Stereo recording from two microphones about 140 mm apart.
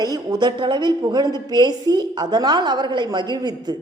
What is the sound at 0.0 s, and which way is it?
A woman's voice, 25° right (ahead or behind).